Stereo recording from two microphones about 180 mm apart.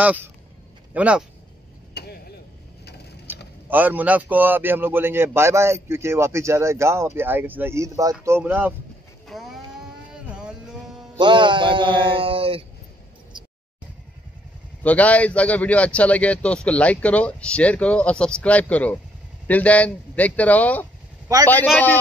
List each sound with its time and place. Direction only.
0.0 s a man's voice: 10° right (ahead or behind)
2.0 s a sound: 60° left (ahead or behind)
3.6 s a man's voice: 10° right (ahead or behind)
9.3 s cattle: centre (ahead or behind)
10.1 s music: 5° right (ahead or behind)
11.1 s speech: 25° right (ahead or behind)
14.8 s a man's voice: 10° left (ahead or behind)